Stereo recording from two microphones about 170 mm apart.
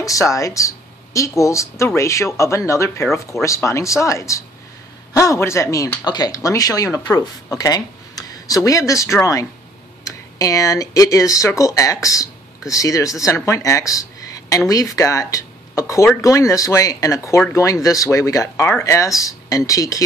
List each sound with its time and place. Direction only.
0.0 s a woman's voice: 20° left (ahead or behind)